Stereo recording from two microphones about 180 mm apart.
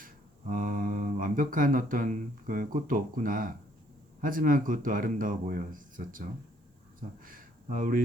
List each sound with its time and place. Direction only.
0.0 s speech: 50° right (ahead or behind)